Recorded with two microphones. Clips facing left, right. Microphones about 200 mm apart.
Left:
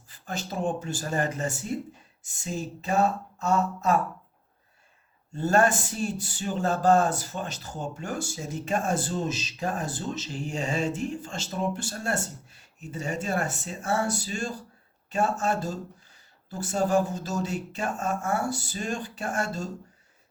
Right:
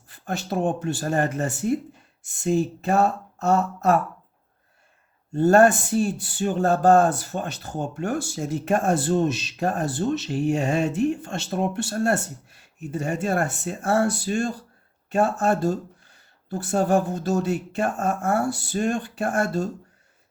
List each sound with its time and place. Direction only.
0.1 s speech: 60° right (ahead or behind)
5.3 s speech: 55° right (ahead or behind)